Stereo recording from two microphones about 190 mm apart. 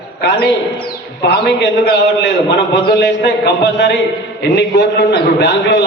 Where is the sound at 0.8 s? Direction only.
60° left (ahead or behind).